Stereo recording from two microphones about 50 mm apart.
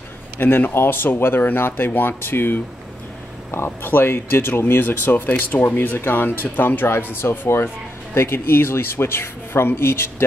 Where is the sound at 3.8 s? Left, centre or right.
Left.